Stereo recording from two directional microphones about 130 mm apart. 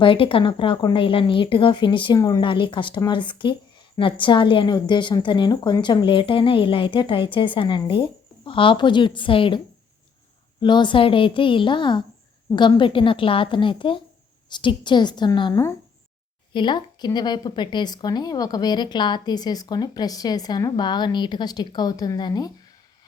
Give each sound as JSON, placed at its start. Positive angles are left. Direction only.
{"t": 0.0, "sound": "speech", "side_deg": 40}
{"t": 2.1, "sound": "speech", "side_deg": 30}
{"t": 2.4, "sound": "speech", "side_deg": 40}
{"t": 10.6, "sound": "speech", "side_deg": 35}